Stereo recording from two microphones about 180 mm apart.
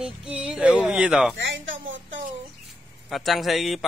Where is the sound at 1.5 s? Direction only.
90° right.